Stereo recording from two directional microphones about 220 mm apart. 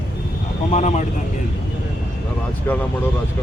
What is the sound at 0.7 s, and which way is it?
Speech, 30° left (ahead or behind).